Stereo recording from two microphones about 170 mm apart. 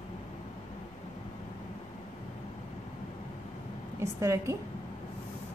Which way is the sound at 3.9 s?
15° right (ahead or behind).